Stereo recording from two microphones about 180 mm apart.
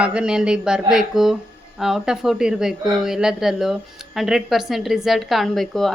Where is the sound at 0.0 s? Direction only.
5° right (ahead or behind).